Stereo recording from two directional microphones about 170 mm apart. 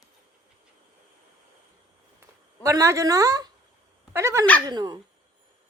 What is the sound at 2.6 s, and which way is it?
A woman's voice, 15° right (ahead or behind).